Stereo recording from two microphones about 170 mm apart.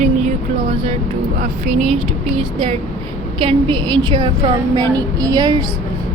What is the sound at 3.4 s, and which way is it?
A woman's voice, 30° right (ahead or behind).